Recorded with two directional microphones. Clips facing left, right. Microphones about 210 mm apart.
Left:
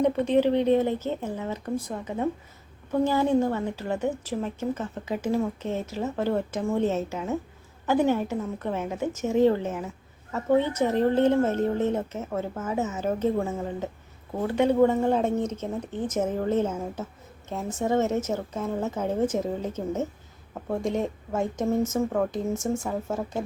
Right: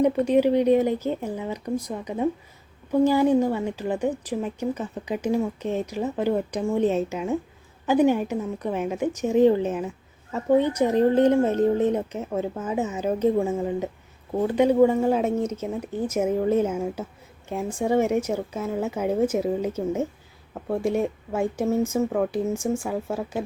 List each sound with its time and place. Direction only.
0.3 s a woman's voice: 10° right (ahead or behind)